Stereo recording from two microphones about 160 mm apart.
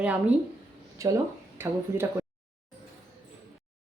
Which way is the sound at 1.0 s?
20° right (ahead or behind).